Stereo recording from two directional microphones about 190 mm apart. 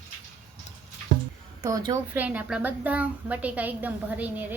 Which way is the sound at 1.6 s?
20° right (ahead or behind).